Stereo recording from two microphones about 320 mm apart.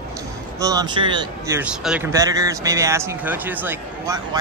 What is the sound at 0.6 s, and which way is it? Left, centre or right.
Speech, centre.